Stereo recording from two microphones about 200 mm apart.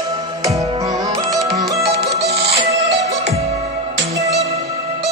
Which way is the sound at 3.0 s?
35° right (ahead or behind).